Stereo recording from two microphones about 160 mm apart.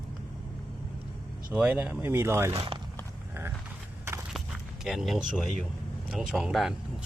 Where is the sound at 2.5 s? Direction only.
35° right (ahead or behind).